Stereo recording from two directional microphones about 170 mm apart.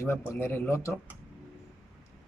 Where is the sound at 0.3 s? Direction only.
15° left (ahead or behind).